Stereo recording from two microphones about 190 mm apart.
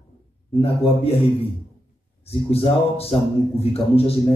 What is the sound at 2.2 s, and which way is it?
A man's voice, 30° left (ahead or behind).